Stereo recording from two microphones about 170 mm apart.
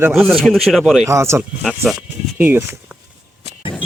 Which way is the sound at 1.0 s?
15° right (ahead or behind).